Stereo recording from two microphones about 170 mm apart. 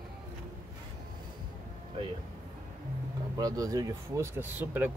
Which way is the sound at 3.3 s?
20° right (ahead or behind).